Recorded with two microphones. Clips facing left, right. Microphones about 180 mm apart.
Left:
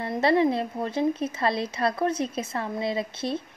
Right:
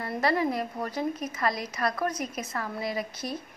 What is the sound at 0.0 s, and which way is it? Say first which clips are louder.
Speech: left 5 dB; 25° left (ahead or behind).